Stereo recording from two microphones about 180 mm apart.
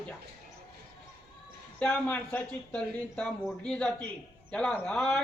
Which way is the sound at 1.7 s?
5° left (ahead or behind).